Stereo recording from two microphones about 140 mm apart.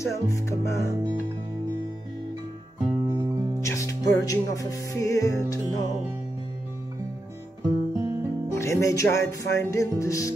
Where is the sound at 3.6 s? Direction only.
20° left (ahead or behind).